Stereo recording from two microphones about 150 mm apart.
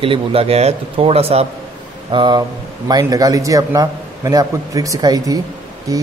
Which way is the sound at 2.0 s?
30° right (ahead or behind).